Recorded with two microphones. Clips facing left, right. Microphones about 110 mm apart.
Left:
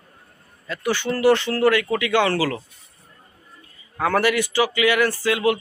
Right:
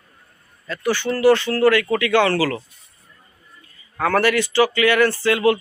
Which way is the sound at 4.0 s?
15° left (ahead or behind).